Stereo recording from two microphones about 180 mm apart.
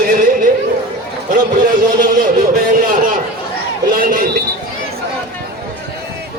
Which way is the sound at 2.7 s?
50° right (ahead or behind).